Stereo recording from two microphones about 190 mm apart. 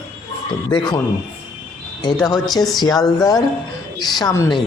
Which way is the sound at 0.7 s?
25° left (ahead or behind).